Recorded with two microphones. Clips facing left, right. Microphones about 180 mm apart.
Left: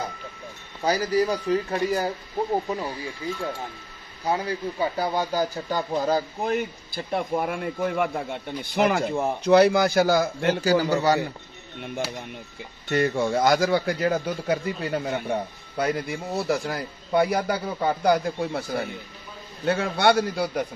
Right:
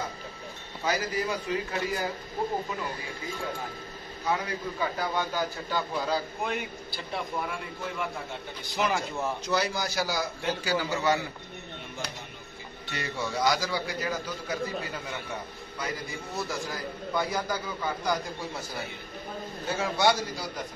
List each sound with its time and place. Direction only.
0.8 s speech: 35° left (ahead or behind)
4.3 s a man's voice: 30° left (ahead or behind)
12.8 s a man's voice: 50° left (ahead or behind)